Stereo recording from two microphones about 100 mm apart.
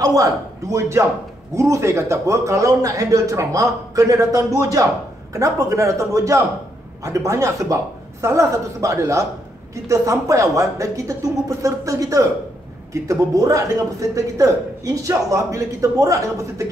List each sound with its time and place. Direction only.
0.0 s a man's voice: 35° right (ahead or behind)